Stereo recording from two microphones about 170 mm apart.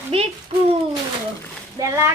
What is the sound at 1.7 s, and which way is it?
Speech, 15° right (ahead or behind).